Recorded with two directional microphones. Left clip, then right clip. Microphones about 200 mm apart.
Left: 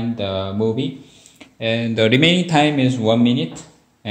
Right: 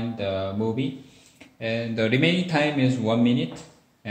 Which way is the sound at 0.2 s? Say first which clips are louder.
Left 5 dB; 35° left (ahead or behind).